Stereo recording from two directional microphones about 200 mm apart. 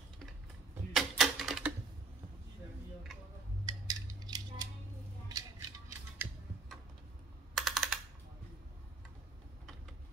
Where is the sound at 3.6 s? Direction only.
20° right (ahead or behind).